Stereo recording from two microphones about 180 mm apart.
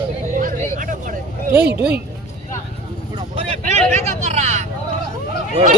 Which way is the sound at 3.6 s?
40° right (ahead or behind).